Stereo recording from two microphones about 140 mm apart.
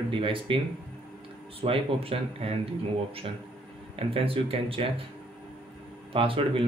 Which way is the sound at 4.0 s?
40° right (ahead or behind).